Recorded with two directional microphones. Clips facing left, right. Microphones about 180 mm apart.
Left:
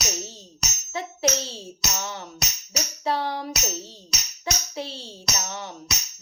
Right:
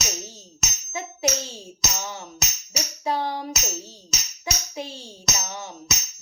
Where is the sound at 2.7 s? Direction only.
15° right (ahead or behind).